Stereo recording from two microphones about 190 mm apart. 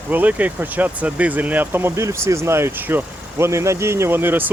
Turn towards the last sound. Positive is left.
turn(degrees=-10)  # may be behind; listen again after turning